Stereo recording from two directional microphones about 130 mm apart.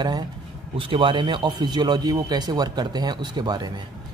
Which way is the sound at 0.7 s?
45° right (ahead or behind).